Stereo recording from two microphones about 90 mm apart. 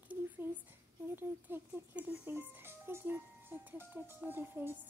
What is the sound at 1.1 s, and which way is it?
Speech, 20° right (ahead or behind).